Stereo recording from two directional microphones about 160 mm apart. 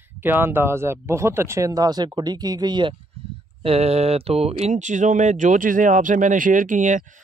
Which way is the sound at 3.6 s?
40° right (ahead or behind).